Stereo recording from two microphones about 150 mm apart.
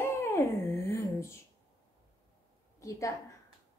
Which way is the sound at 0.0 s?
15° left (ahead or behind).